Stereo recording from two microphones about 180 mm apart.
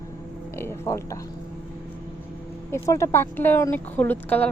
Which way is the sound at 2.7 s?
15° left (ahead or behind).